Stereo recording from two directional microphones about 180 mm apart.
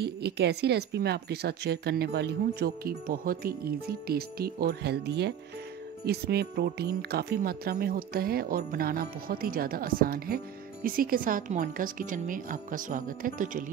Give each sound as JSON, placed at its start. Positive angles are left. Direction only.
{"t": 0.0, "sound": "a woman's voice", "side_deg": -65}